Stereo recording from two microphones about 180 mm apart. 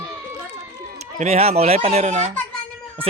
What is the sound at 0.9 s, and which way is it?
A man's voice, 35° right (ahead or behind).